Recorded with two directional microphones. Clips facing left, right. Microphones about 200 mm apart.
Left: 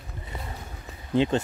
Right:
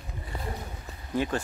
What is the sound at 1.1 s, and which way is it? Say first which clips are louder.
Speech: left 5 dB; 20° left (ahead or behind).